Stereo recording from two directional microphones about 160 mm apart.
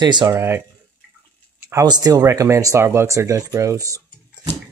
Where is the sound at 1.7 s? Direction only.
25° right (ahead or behind).